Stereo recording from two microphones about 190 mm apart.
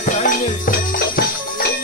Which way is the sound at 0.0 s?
45° left (ahead or behind).